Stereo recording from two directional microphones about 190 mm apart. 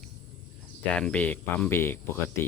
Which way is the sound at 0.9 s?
5° left (ahead or behind).